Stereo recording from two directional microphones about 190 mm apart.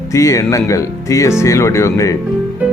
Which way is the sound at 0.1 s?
15° left (ahead or behind).